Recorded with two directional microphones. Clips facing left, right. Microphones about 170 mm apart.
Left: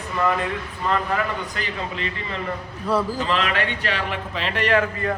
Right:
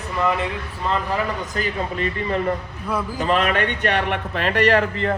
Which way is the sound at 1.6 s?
45° right (ahead or behind).